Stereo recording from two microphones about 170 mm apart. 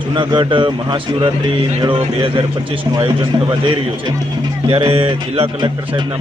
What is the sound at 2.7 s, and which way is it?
Speech, 30° right (ahead or behind).